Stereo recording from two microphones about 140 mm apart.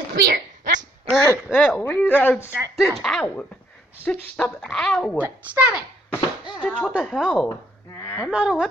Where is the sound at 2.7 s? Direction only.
Centre (ahead or behind).